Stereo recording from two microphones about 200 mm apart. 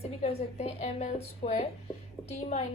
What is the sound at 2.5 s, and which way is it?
Speech, 35° left (ahead or behind).